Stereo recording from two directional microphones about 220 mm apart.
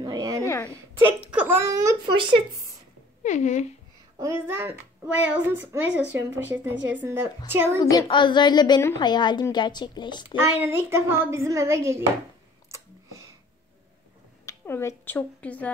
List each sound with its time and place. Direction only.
0.0 s a sound: 15° right (ahead or behind)
0.4 s a sound: 15° left (ahead or behind)
0.7 s a woman's voice: 10° right (ahead or behind)
3.3 s speech: 35° left (ahead or behind)
4.2 s speech: 10° right (ahead or behind)
6.7 s a woman's voice: 55° right (ahead or behind)
7.0 s speech: 10° right (ahead or behind)
7.8 s a woman's voice: 15° left (ahead or behind)
10.6 s speech: 10° right (ahead or behind)
12.7 s a sound: 15° right (ahead or behind)
14.4 s speech: 15° left (ahead or behind)